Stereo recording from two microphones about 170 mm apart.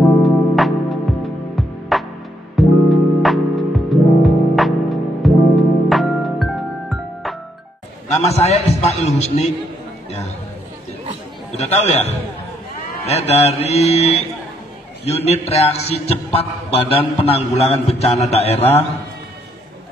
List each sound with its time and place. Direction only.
0.2 s music: centre (ahead or behind)
8.2 s a man's voice: 40° left (ahead or behind)
11.5 s a man's voice: 40° left (ahead or behind)